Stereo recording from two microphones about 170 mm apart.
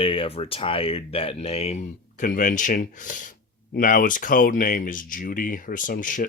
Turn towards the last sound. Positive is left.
turn(degrees=50)  # may be behind; listen again after turning